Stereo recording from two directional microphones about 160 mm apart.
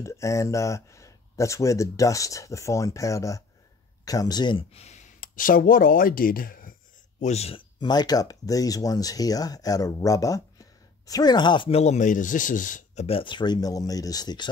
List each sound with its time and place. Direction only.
0.0 s speech: 20° left (ahead or behind); by 6.7 s 65° left (ahead or behind)
7.2 s speech: 45° left (ahead or behind)
7.8 s speech: 25° left (ahead or behind); by 13.0 s 55° left (ahead or behind)
13.0 s speech: 35° left (ahead or behind)